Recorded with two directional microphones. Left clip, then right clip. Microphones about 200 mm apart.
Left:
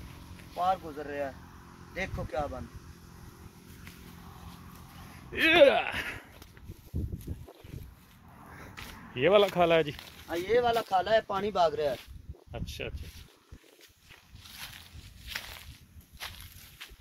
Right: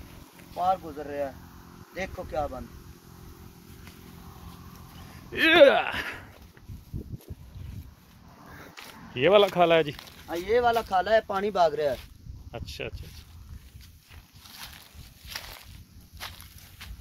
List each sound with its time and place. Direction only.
0.6 s speech: 5° left (ahead or behind)
5.3 s speech: 15° right (ahead or behind)
5.9 s speech: 5° right (ahead or behind)
9.1 s speech: 5° right (ahead or behind)
10.2 s speech: 60° right (ahead or behind); by 12.0 s 40° right (ahead or behind)
12.0 s a sound: 5° right (ahead or behind)
14.4 s a sound: centre (ahead or behind)
15.2 s walk: 10° right (ahead or behind)